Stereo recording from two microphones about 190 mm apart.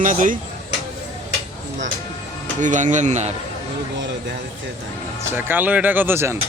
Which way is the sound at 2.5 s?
40° right (ahead or behind).